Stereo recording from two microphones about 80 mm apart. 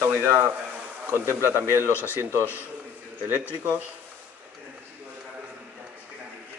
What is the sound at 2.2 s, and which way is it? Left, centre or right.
Speech, right.